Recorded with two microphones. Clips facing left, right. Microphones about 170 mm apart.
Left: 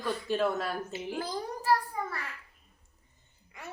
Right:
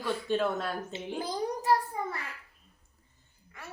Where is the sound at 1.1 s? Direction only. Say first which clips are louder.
Right 4 dB; 20° right (ahead or behind).